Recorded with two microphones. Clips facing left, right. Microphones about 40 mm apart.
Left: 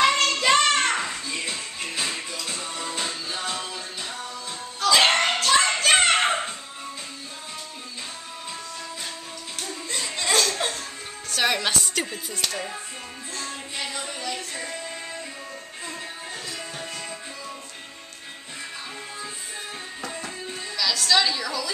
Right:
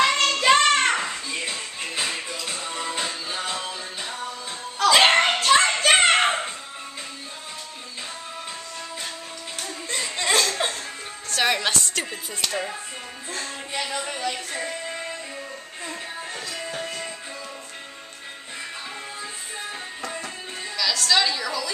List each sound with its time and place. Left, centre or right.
0.0 s child singing: centre
0.4 s music: centre
4.9 s a sound: right
9.6 s a sound: centre
11.2 s music: centre
12.1 s music: centre
14.5 s music: centre
16.4 s music: centre
20.0 s music: centre
20.7 s a woman's voice: centre